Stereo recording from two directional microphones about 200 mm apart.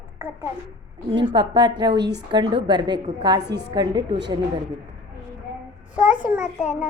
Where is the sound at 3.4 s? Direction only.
55° right (ahead or behind).